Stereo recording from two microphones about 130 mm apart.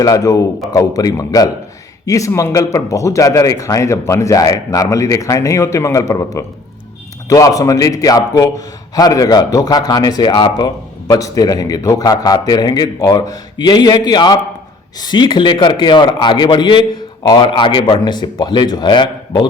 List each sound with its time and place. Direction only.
0.0 s a man's voice: 25° left (ahead or behind)